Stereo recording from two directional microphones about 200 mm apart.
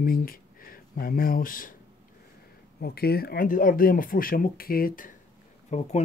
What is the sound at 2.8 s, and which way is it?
Speech, 50° left (ahead or behind).